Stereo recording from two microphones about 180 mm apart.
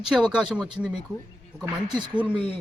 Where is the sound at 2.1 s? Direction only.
5° right (ahead or behind).